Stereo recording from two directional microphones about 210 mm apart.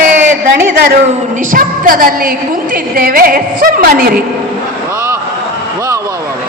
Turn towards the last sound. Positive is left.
turn(degrees=-10)  # may be behind; listen again after turning